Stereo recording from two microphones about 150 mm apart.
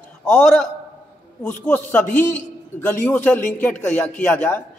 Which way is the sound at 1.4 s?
10° left (ahead or behind).